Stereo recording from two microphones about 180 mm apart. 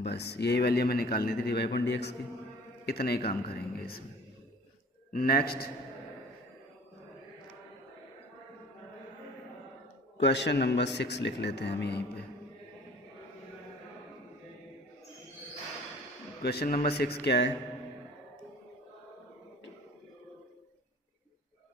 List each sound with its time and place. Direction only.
0.0 s a man's voice: 65° left (ahead or behind)
5.1 s a man's voice: 55° left (ahead or behind)
10.1 s a man's voice: 75° left (ahead or behind)
16.4 s a man's voice: 60° left (ahead or behind)